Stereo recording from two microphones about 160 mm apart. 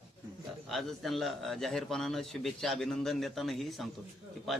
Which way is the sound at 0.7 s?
Centre (ahead or behind).